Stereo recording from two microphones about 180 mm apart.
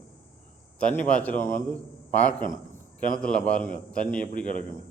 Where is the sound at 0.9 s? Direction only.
10° left (ahead or behind).